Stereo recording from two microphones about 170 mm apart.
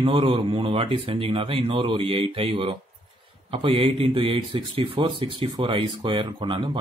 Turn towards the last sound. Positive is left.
turn(degrees=-30)  # may be behind; listen again after turning